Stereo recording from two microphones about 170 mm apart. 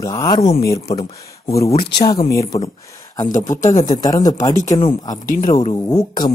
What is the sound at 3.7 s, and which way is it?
Speech, 45° left (ahead or behind).